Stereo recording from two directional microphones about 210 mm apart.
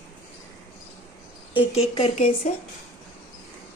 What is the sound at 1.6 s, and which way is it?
Speech, 30° left (ahead or behind).